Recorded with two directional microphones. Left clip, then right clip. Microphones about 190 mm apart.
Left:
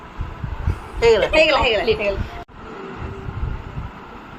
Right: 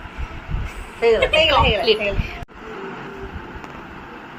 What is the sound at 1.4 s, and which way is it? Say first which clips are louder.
Speech: even; 35° left (ahead or behind).